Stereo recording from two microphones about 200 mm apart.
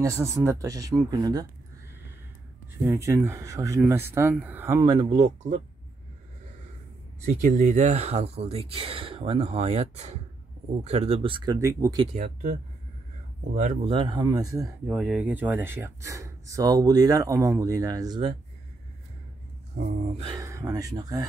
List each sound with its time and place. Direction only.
0.0 s speech: 15° right (ahead or behind)
2.8 s speech: 15° right (ahead or behind)
5.1 s speech: 35° right (ahead or behind)
7.2 s speech: 35° right (ahead or behind); by 12.1 s 15° right (ahead or behind)
12.1 s speech: 40° right (ahead or behind)
13.6 s speech: 40° right (ahead or behind)
13.9 s speech: 20° right (ahead or behind)
19.7 s speech: 30° right (ahead or behind)
20.3 s speech: 15° right (ahead or behind)